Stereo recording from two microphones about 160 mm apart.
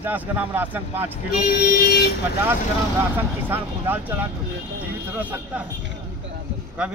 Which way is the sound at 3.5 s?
10° right (ahead or behind).